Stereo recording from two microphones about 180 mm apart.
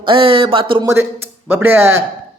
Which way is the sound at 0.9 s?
15° right (ahead or behind).